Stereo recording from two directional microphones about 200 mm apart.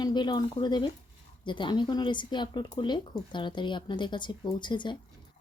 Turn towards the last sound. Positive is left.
turn(degrees=25)  # may be behind; listen again after turning